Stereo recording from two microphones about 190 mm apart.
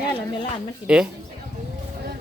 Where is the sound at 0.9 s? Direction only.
5° right (ahead or behind).